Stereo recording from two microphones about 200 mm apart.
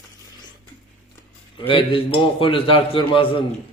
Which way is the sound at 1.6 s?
25° left (ahead or behind).